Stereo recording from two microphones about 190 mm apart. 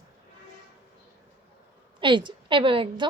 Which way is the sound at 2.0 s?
25° right (ahead or behind).